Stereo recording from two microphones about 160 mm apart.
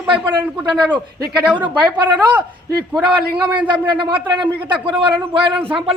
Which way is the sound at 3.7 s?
30° right (ahead or behind).